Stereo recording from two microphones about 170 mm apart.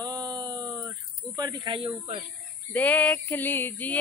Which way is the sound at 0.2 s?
25° right (ahead or behind).